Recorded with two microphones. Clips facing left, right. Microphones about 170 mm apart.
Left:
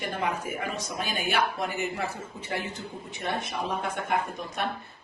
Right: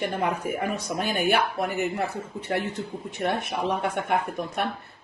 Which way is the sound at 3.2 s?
60° right (ahead or behind).